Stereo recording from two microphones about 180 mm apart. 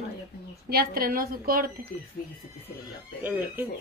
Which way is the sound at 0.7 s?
55° right (ahead or behind).